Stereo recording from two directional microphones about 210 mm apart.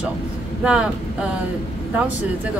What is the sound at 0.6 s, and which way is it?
Speech, 5° right (ahead or behind).